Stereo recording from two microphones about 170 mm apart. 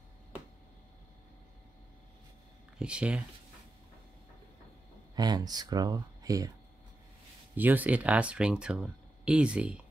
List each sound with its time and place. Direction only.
2.8 s speech: 5° right (ahead or behind)
5.1 s speech: 25° right (ahead or behind)
7.5 s speech: 10° right (ahead or behind)